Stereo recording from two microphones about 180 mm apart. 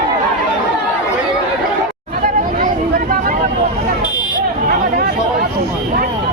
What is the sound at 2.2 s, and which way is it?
Chatter, 50° right (ahead or behind).